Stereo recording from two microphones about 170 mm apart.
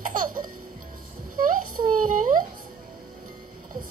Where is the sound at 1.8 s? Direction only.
50° right (ahead or behind).